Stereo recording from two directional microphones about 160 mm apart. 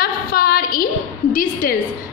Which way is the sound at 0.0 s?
75° left (ahead or behind).